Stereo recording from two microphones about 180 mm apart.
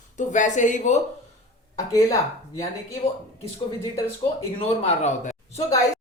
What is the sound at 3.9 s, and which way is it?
Speech, 15° left (ahead or behind).